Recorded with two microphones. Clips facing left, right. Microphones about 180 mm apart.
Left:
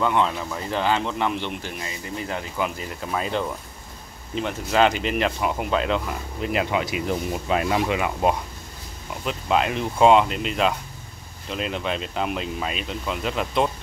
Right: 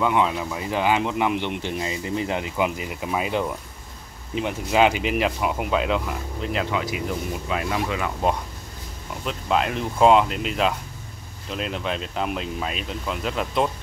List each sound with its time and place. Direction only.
0.0 s speech: 10° right (ahead or behind)
1.6 s speech: 25° right (ahead or behind); by 6.5 s 5° right (ahead or behind)
6.5 s speech: 15° left (ahead or behind)
7.1 s speech: 30° left (ahead or behind)
7.9 s speech: 10° left (ahead or behind)